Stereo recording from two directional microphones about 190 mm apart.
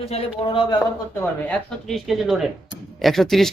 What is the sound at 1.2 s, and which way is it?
Speech, 5° left (ahead or behind).